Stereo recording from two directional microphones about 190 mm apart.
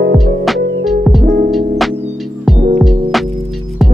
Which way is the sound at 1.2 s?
40° right (ahead or behind).